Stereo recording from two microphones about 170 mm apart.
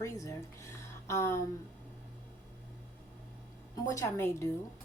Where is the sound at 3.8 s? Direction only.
15° left (ahead or behind).